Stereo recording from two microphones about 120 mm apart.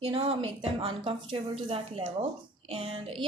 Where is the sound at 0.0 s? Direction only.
55° right (ahead or behind).